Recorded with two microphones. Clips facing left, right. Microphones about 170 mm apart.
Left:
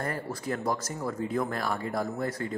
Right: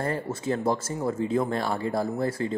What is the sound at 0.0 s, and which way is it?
Speech, 25° right (ahead or behind).